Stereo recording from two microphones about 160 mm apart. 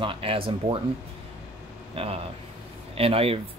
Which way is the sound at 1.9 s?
35° right (ahead or behind).